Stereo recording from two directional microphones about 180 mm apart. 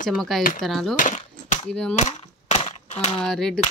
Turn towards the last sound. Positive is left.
turn(degrees=5)  # may be behind; listen again after turning